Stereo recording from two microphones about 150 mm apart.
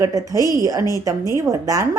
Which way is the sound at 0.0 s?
20° right (ahead or behind).